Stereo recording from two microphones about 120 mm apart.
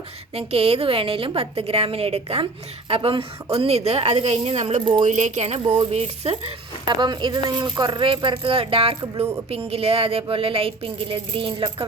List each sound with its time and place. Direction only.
0.3 s a woman's voice: 55° right (ahead or behind)
5.0 s speech: 90° right; by 5.6 s 65° right (ahead or behind)
5.6 s speech: 35° right (ahead or behind)
5.9 s a woman's voice: 55° right (ahead or behind)
6.8 s a woman's voice: 40° right (ahead or behind)